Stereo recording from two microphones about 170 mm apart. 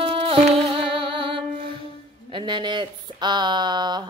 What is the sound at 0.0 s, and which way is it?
Music, 35° right (ahead or behind).